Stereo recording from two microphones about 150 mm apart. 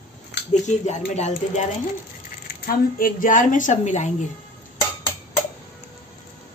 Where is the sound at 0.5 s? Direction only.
50° left (ahead or behind).